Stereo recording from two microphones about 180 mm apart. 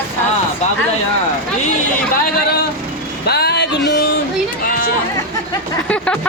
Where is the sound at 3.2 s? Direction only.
60° left (ahead or behind).